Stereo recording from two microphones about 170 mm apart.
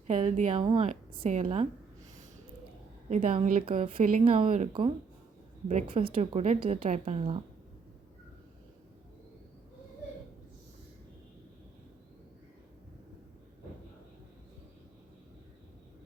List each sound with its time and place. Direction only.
0.1 s a woman's voice: 45° right (ahead or behind)
0.6 s speech: 35° right (ahead or behind)
3.1 s speech: 40° right (ahead or behind)